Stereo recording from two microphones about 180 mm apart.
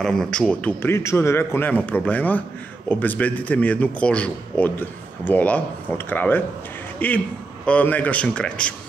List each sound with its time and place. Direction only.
0.0 s a man's voice: 5° left (ahead or behind)